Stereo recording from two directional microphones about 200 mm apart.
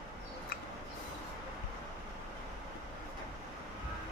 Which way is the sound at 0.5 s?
45° left (ahead or behind).